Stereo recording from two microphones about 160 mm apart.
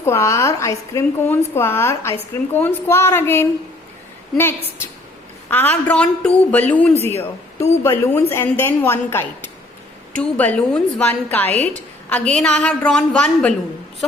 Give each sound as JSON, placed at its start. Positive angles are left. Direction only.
{"t": 0.0, "sound": "a woman's voice", "side_deg": 20}
{"t": 5.5, "sound": "a woman's voice", "side_deg": 10}